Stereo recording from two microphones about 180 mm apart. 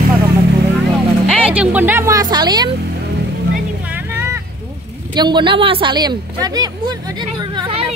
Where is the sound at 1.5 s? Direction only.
10° right (ahead or behind); by 2.7 s 25° right (ahead or behind).